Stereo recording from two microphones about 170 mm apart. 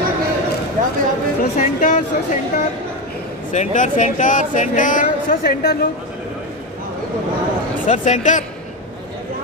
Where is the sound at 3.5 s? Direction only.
45° left (ahead or behind).